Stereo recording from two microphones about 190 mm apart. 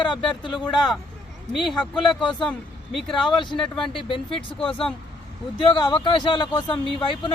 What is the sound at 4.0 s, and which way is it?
Speech, 25° left (ahead or behind).